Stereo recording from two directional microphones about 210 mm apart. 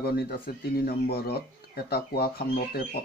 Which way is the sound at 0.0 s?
50° left (ahead or behind).